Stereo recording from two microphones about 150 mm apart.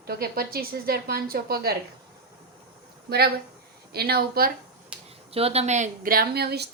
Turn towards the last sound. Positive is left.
turn(degrees=-90)